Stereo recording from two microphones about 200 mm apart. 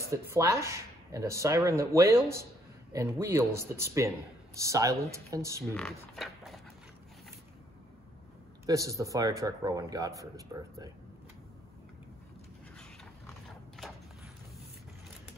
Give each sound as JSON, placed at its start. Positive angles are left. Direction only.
{"t": 0.3, "sound": "speech", "side_deg": -15}
{"t": 5.8, "sound": "speech", "side_deg": 5}
{"t": 8.6, "sound": "speech", "side_deg": -15}
{"t": 13.5, "sound": "horse", "side_deg": 0}